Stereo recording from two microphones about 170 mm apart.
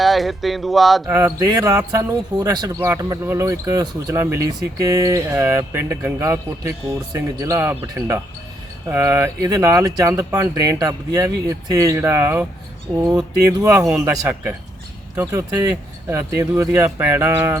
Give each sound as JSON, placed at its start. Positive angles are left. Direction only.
{"t": 0.0, "sound": "speech", "side_deg": 0}
{"t": 1.0, "sound": "speech", "side_deg": -15}
{"t": 13.5, "sound": "speech", "side_deg": -15}